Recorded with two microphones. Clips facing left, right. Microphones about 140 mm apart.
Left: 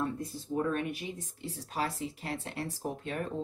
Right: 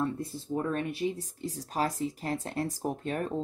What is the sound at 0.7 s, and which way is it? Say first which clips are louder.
Speech: right 4 dB; 35° right (ahead or behind).